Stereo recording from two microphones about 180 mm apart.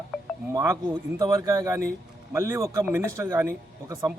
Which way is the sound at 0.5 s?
20° right (ahead or behind).